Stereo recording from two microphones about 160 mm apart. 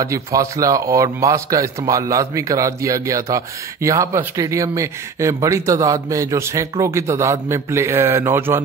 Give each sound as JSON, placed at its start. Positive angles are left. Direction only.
{"t": 0.0, "sound": "a man's voice", "side_deg": -20}